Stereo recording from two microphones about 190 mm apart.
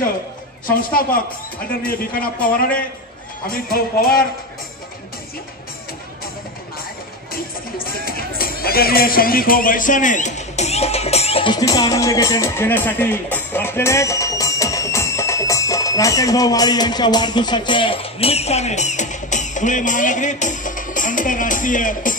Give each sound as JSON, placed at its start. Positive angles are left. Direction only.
{"t": 0.7, "sound": "speech", "side_deg": 50}
{"t": 7.3, "sound": "speech", "side_deg": 50}